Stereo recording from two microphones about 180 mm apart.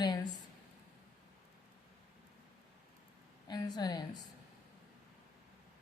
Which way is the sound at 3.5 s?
20° left (ahead or behind).